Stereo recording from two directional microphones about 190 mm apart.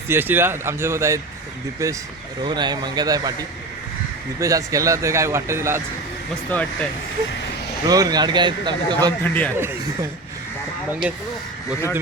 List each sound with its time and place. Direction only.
0.1 s speech: 10° right (ahead or behind)
4.4 s speech: 15° right (ahead or behind)
6.5 s speech: 10° left (ahead or behind)
7.9 s speech: 20° right (ahead or behind)
9.2 s speech: 10° left (ahead or behind)
9.6 s speech: 15° right (ahead or behind)